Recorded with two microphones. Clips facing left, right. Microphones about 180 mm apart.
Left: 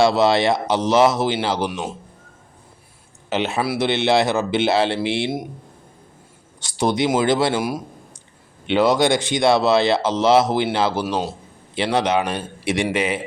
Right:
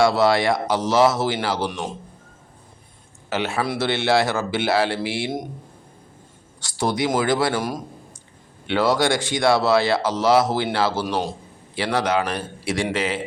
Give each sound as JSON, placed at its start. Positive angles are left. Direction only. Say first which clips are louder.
{"t": 0.0, "sound": "speech", "louder": "left 1 dB", "side_deg": 25}
{"t": 3.2, "sound": "speech", "louder": "left 2 dB", "side_deg": 20}
{"t": 6.6, "sound": "speech", "louder": "left 3 dB", "side_deg": 20}
{"t": 7.5, "sound": "a man's voice", "louder": "left 2 dB", "side_deg": 10}